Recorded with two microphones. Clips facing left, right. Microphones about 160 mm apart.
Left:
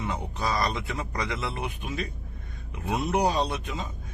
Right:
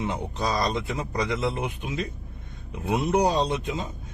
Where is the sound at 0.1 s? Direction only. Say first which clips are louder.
Right 2 dB; 20° right (ahead or behind).